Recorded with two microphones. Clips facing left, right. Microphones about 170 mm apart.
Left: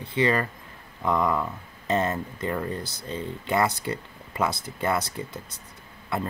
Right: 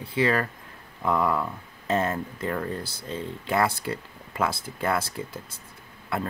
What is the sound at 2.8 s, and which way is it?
Speech, 30° right (ahead or behind).